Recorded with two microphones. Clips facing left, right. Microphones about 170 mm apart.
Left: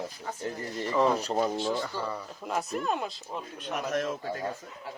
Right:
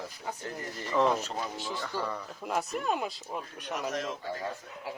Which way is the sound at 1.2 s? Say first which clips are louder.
Left 8 dB; 40° left (ahead or behind).